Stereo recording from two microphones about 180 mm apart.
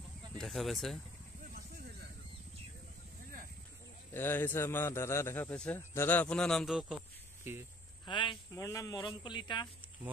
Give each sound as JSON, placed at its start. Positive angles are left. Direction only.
{"t": 0.4, "sound": "speech", "side_deg": 0}
{"t": 4.1, "sound": "speech", "side_deg": 10}
{"t": 8.0, "sound": "a man's voice", "side_deg": 25}